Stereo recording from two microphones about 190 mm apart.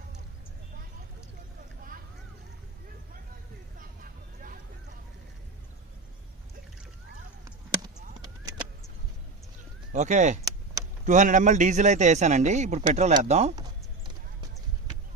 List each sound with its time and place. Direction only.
9.9 s a man's voice: 40° right (ahead or behind)